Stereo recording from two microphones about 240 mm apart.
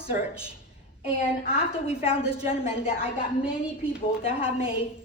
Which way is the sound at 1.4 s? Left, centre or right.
Left.